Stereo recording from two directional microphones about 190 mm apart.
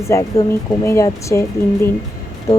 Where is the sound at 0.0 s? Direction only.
15° left (ahead or behind).